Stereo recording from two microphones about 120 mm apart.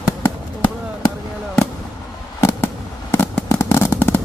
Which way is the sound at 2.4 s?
20° left (ahead or behind).